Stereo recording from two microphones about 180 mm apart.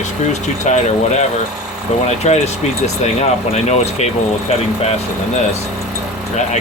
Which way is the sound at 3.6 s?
40° left (ahead or behind).